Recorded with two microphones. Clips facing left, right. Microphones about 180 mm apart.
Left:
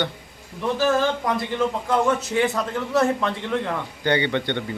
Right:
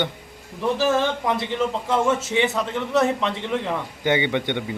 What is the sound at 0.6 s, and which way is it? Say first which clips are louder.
A man's voice: even; 5° right (ahead or behind).